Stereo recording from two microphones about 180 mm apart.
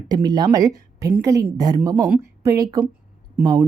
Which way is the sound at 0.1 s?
20° right (ahead or behind).